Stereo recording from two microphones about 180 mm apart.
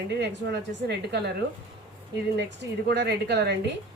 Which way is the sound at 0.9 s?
70° right (ahead or behind).